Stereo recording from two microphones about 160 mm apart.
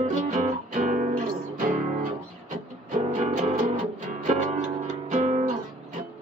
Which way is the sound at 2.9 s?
55° right (ahead or behind).